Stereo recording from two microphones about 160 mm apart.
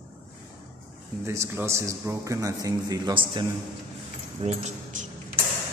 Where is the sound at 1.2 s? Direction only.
15° right (ahead or behind).